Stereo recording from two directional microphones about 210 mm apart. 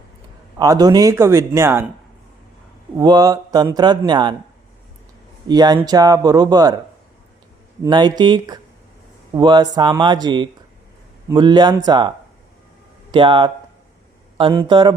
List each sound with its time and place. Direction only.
0.6 s speech: 15° right (ahead or behind)
3.0 s speech: 20° right (ahead or behind)
5.5 s speech: 20° right (ahead or behind)
7.8 s speech: 20° right (ahead or behind)